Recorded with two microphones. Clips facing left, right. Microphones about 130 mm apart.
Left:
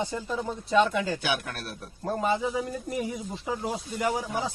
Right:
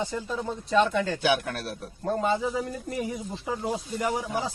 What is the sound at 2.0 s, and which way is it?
Speech, 5° left (ahead or behind).